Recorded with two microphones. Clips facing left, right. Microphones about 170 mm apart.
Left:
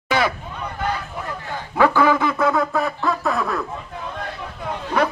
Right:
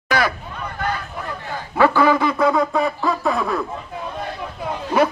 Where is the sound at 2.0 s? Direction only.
10° right (ahead or behind).